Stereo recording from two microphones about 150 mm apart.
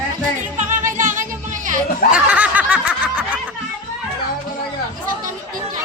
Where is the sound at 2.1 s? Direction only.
10° right (ahead or behind).